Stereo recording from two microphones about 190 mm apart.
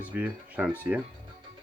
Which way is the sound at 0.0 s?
10° right (ahead or behind).